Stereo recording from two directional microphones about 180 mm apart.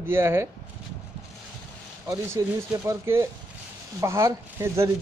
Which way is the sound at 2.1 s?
15° right (ahead or behind).